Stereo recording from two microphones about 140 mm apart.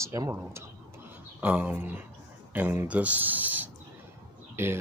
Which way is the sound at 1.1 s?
10° right (ahead or behind).